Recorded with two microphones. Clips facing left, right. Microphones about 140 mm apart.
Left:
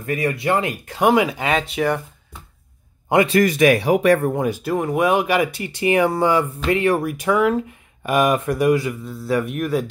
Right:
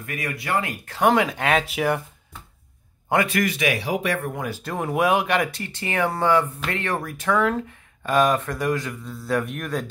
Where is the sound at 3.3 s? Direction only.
45° left (ahead or behind).